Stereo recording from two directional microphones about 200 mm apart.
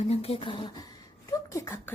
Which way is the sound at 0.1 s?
30° left (ahead or behind).